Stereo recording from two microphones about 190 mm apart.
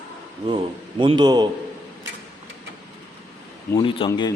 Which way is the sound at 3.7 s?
25° left (ahead or behind).